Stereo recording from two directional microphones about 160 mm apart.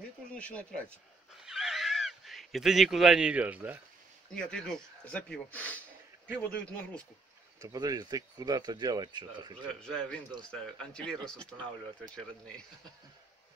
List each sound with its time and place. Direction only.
0.3 s a sound: 5° left (ahead or behind); by 3.8 s 10° right (ahead or behind)
4.3 s speech: 5° left (ahead or behind)
7.6 s speech: 25° right (ahead or behind)
9.8 s speech: 5° left (ahead or behind)